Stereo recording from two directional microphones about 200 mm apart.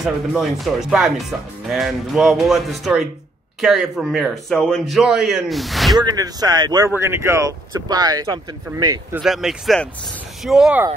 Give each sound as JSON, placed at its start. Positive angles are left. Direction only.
{"t": 0.0, "sound": "a man's voice", "side_deg": 0}
{"t": 5.9, "sound": "speech", "side_deg": -20}
{"t": 9.1, "sound": "a man's voice", "side_deg": 0}